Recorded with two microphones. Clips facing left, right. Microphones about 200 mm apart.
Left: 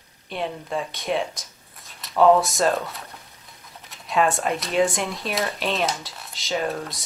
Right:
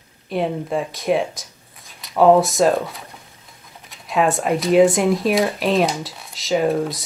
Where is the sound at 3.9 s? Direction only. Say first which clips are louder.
Right 3 dB; centre (ahead or behind).